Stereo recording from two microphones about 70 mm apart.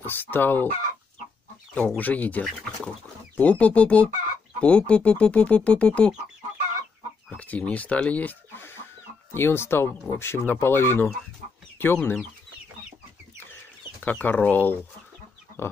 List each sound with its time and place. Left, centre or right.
0.0 s speech: left
1.7 s speech: centre
7.2 s speech: left
14.0 s speech: left